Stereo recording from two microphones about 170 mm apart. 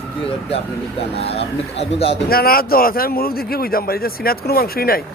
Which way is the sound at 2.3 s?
60° left (ahead or behind).